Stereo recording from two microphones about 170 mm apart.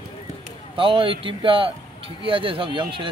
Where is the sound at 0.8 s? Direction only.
30° right (ahead or behind).